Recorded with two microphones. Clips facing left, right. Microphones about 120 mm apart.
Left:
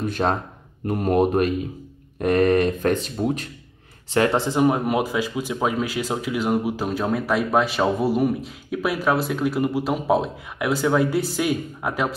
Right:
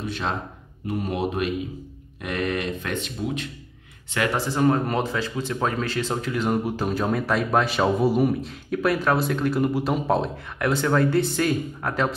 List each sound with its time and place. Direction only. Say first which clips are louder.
0.0 s speech: left 5 dB; 45° left (ahead or behind)
4.1 s speech: left 5 dB; 30° left (ahead or behind); by 12.1 s 10° left (ahead or behind)